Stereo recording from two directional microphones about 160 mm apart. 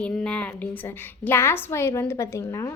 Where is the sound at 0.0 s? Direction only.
10° left (ahead or behind).